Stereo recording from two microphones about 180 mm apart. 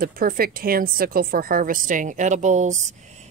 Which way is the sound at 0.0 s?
55° right (ahead or behind).